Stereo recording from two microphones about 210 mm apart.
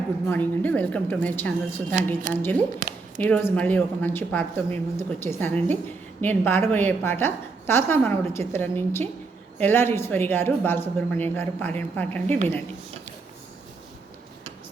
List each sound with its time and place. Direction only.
0.3 s a woman's voice: 10° left (ahead or behind)
2.3 s a woman's voice: 40° right (ahead or behind)
3.2 s a woman's voice: 5° left (ahead or behind)